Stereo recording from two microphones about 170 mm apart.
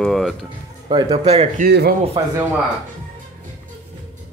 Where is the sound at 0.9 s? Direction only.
30° right (ahead or behind).